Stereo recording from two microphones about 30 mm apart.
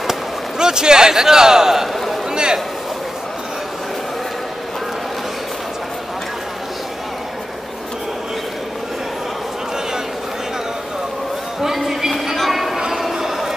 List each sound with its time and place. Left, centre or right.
0.6 s a man's voice: right
2.3 s a man's voice: right
11.6 s a sound: centre